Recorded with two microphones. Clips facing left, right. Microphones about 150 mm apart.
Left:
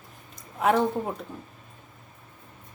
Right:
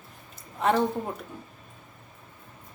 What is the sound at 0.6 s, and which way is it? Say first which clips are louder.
Speech: left 1 dB; 5° left (ahead or behind).